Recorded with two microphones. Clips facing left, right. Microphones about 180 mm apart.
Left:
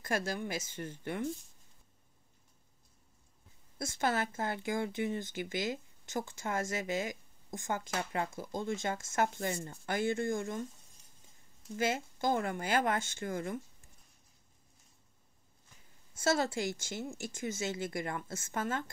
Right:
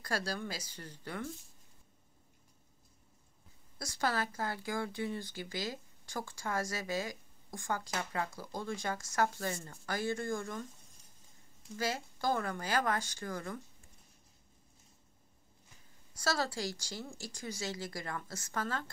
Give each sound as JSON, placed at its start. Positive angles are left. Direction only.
{"t": 0.0, "sound": "speech", "side_deg": 20}
{"t": 3.7, "sound": "speech", "side_deg": 25}
{"t": 11.8, "sound": "speech", "side_deg": 20}
{"t": 16.2, "sound": "speech", "side_deg": 25}